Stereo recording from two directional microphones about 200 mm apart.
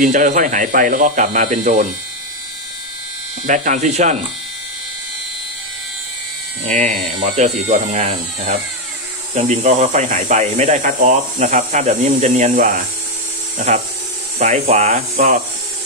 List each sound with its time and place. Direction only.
0.0 s speech: 40° right (ahead or behind)
3.4 s speech: 40° right (ahead or behind)
6.6 s speech: 35° right (ahead or behind)